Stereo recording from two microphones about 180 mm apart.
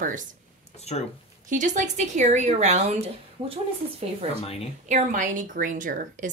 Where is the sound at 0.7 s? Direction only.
35° left (ahead or behind).